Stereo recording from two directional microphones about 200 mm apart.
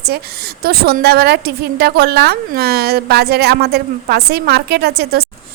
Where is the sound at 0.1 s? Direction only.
50° right (ahead or behind).